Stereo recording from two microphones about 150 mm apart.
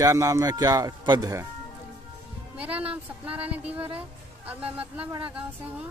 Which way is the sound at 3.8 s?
40° right (ahead or behind).